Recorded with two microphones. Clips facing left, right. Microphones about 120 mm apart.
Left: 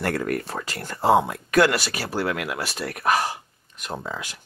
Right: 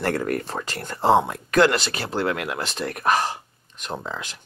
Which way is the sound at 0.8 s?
20° right (ahead or behind).